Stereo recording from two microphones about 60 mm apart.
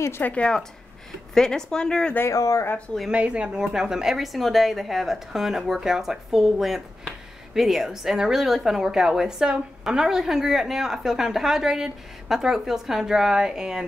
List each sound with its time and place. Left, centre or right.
0.2 s speech: left
1.3 s speech: centre
2.2 s speech: left
3.1 s a woman's voice: centre